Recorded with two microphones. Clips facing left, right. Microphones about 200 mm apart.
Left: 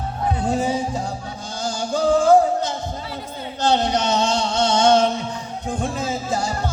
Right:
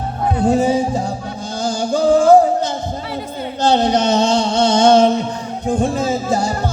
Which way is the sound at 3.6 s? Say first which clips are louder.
Right 5 dB; 30° right (ahead or behind).